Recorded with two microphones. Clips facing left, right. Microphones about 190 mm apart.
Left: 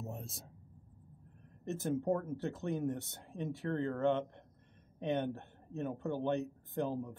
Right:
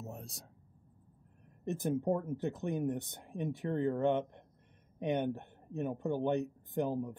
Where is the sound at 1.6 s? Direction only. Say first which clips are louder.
Right 2 dB; 15° right (ahead or behind).